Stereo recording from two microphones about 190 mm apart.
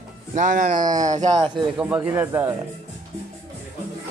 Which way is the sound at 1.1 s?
35° right (ahead or behind).